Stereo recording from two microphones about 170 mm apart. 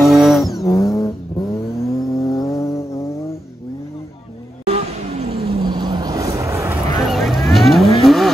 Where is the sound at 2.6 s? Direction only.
15° left (ahead or behind).